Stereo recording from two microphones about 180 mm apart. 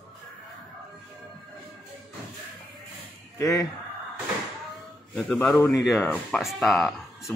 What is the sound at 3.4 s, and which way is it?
Speech, 15° left (ahead or behind).